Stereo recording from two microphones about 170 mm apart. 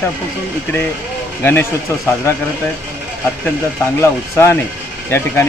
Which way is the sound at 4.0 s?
15° left (ahead or behind).